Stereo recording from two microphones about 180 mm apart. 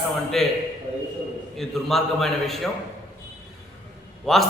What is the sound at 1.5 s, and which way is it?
A man's voice, centre (ahead or behind).